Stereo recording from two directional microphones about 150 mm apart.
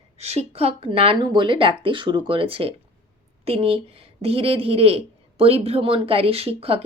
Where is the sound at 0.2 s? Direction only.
45° right (ahead or behind).